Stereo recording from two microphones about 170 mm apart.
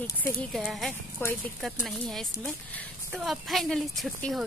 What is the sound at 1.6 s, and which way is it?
Speech, centre (ahead or behind).